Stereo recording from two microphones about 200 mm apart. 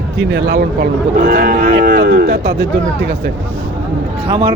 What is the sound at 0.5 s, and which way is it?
Cattle, 45° right (ahead or behind).